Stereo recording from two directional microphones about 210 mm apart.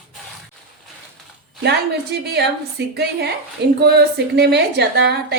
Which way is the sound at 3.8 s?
50° right (ahead or behind).